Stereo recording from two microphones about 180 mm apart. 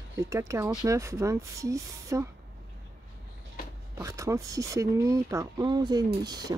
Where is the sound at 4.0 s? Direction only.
15° right (ahead or behind).